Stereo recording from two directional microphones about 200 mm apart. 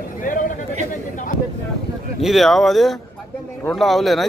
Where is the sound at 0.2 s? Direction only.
40° left (ahead or behind).